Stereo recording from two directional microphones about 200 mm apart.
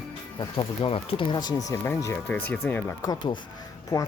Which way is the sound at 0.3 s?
25° left (ahead or behind).